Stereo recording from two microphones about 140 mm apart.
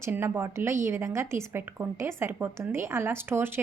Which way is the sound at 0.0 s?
15° right (ahead or behind).